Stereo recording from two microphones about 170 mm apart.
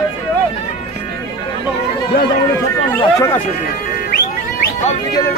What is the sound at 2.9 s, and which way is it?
Speech, 20° left (ahead or behind).